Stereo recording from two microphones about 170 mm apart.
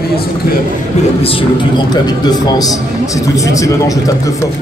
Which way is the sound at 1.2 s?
30° left (ahead or behind).